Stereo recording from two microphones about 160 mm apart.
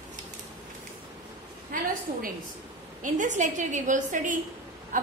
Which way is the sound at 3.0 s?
50° right (ahead or behind).